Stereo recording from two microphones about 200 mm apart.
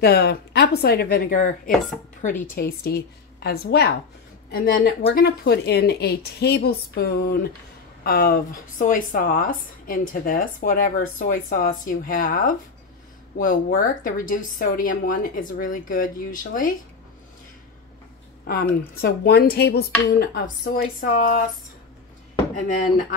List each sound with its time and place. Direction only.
0.0 s speech: 55° left (ahead or behind); by 2.4 s 35° left (ahead or behind)
2.8 s speech: 55° left (ahead or behind)
18.9 s speech: 55° left (ahead or behind)
22.7 s speech: 40° left (ahead or behind)